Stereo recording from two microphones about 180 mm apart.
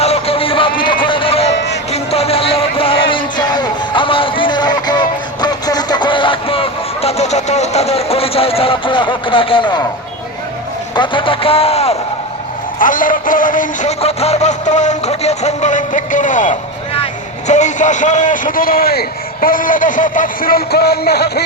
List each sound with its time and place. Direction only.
0.0 s music: 35° left (ahead or behind)
1.5 s music: 70° left (ahead or behind)
1.9 s music: 35° left (ahead or behind)
10.9 s speech: 25° left (ahead or behind)
12.8 s a man's voice: 50° left (ahead or behind)
14.0 s a man's voice: 35° left (ahead or behind); by 21.4 s 65° left (ahead or behind)